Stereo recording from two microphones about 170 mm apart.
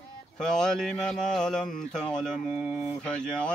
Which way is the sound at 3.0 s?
5° left (ahead or behind).